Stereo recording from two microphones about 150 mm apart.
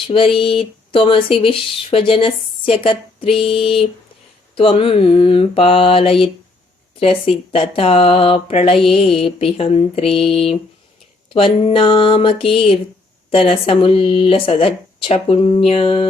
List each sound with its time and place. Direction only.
0.1 s speech: 35° left (ahead or behind)